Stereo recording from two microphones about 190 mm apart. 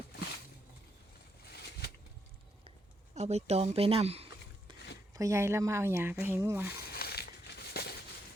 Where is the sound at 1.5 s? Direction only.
55° left (ahead or behind).